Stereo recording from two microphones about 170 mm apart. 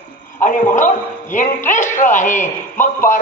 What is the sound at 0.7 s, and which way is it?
A man's voice, 50° left (ahead or behind).